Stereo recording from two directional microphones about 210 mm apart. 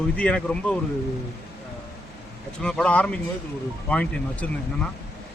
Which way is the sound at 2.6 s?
5° left (ahead or behind).